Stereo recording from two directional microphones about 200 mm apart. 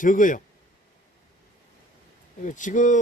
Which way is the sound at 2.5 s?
40° left (ahead or behind).